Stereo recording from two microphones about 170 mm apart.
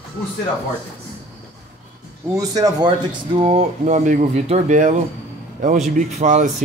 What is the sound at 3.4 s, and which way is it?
A man's voice, 40° right (ahead or behind).